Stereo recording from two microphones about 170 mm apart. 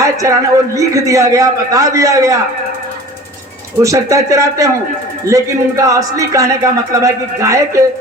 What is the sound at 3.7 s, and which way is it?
Speech, 20° right (ahead or behind).